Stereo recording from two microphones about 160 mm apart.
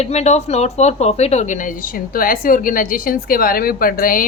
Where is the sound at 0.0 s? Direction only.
45° left (ahead or behind).